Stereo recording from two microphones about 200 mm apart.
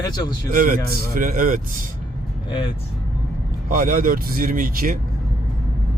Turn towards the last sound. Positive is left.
turn(degrees=-45)  # may be behind; listen again after turning